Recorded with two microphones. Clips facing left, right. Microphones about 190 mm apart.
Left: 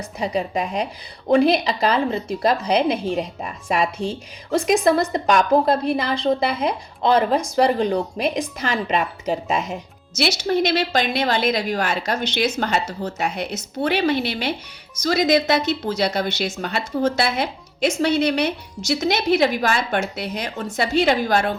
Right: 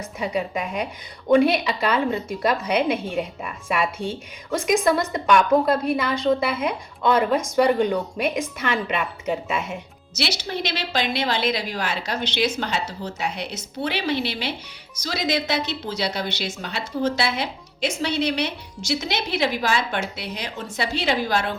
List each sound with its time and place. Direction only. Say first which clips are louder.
0.0 s a woman's voice: left 2 dB; 35° left (ahead or behind)
10.2 s a woman's voice: left 7 dB; 50° left (ahead or behind)